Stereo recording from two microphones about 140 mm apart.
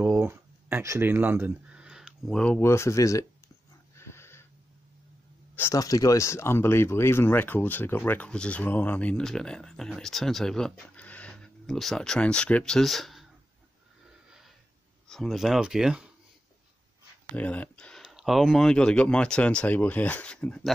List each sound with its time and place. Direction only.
0.0 s a sound: 20° right (ahead or behind)
2.3 s speech: 10° left (ahead or behind)
2.6 s speech: 20° left (ahead or behind)
3.9 s dog: 20° left (ahead or behind)
5.6 s speech: 25° left (ahead or behind); by 13.3 s centre (ahead or behind)
15.0 s speech: centre (ahead or behind)
17.4 s speech: 10° left (ahead or behind)